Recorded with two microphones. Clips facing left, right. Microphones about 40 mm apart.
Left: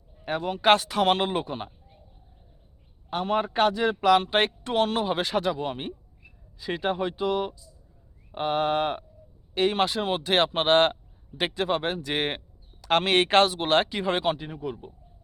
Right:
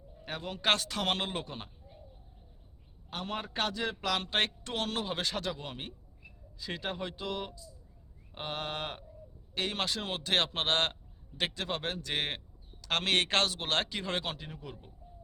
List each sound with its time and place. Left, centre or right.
0.3 s speech: left
3.1 s speech: centre